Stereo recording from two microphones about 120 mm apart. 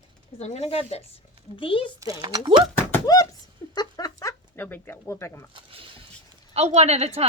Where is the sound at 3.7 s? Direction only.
30° left (ahead or behind).